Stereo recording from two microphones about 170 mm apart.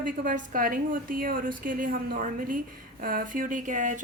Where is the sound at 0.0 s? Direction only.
55° right (ahead or behind).